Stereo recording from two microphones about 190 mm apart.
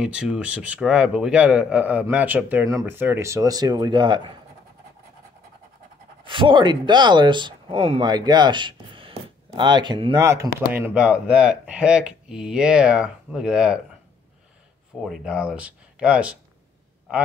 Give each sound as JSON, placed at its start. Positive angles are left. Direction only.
{"t": 0.0, "sound": "a man's voice", "side_deg": -5}
{"t": 6.2, "sound": "a man's voice", "side_deg": -25}
{"t": 15.0, "sound": "speech", "side_deg": -5}